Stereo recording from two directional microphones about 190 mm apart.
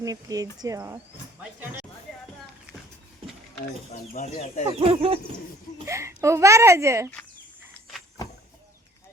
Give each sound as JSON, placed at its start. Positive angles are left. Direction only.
{"t": 0.0, "sound": "speech", "side_deg": -20}
{"t": 4.1, "sound": "speech", "side_deg": 40}
{"t": 4.6, "sound": "speech", "side_deg": -30}
{"t": 5.8, "sound": "a child's voice", "side_deg": -15}
{"t": 7.7, "sound": "vehicle", "side_deg": 0}